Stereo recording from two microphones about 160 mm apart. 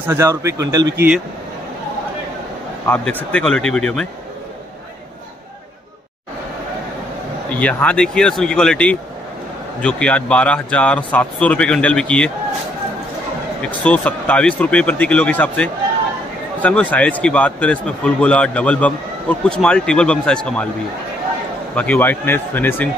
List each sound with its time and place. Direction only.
0.0 s a man's voice: 15° right (ahead or behind)
2.9 s a man's voice: 10° left (ahead or behind)
7.5 s a man's voice: 10° left (ahead or behind)
13.7 s a man's voice: 10° left (ahead or behind)
16.9 s a man's voice: 10° left (ahead or behind)
21.7 s a man's voice: 10° left (ahead or behind)